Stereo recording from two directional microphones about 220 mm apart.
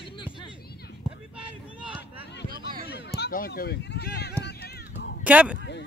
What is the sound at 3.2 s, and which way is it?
Run, 45° left (ahead or behind).